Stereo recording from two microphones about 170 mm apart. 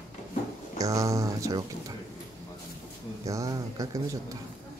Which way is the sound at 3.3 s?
20° right (ahead or behind).